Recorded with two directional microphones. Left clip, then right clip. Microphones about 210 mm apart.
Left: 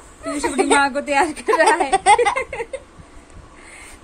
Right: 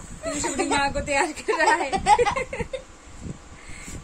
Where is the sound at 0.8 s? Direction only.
40° left (ahead or behind).